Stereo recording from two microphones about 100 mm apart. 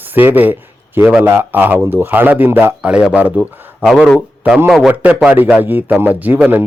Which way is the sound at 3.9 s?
Centre (ahead or behind).